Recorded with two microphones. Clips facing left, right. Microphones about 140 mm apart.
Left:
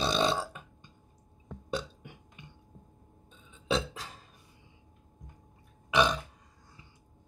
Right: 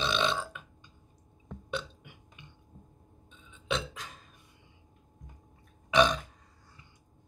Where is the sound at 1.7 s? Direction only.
40° left (ahead or behind).